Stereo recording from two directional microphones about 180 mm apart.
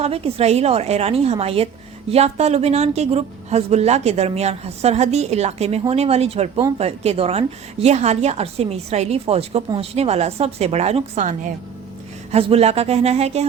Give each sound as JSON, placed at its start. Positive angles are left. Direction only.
{"t": 0.0, "sound": "a woman's voice", "side_deg": -35}